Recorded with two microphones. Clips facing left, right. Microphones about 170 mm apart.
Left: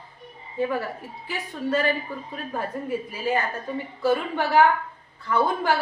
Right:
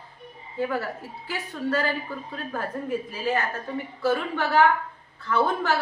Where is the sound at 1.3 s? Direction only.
15° left (ahead or behind).